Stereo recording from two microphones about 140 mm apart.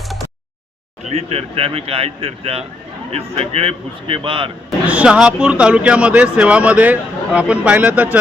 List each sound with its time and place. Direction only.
1.1 s speech: 45° right (ahead or behind)
4.9 s speech: 10° right (ahead or behind)